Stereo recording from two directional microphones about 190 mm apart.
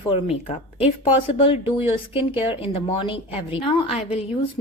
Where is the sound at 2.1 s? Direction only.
30° left (ahead or behind).